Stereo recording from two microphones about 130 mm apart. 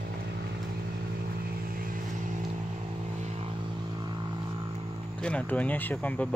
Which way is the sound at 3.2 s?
55° right (ahead or behind).